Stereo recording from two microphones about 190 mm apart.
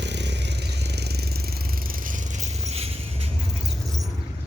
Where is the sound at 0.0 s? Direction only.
65° right (ahead or behind); by 3.6 s 30° right (ahead or behind).